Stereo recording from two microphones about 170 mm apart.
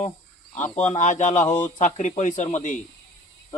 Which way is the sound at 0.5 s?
45° left (ahead or behind).